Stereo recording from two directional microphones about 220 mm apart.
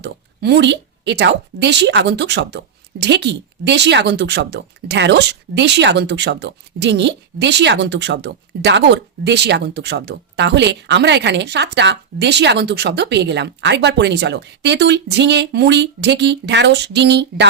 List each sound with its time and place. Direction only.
0.0 s a woman's voice: 50° right (ahead or behind)